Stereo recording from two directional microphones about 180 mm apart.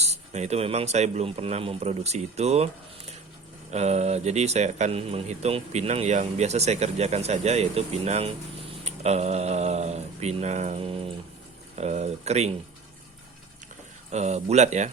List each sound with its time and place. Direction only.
0.0 s speech: 35° right (ahead or behind)
3.7 s speech: 40° right (ahead or behind)
14.1 s speech: 40° right (ahead or behind)